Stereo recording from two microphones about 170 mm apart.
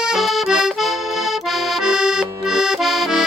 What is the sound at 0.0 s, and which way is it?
Accordion, centre (ahead or behind).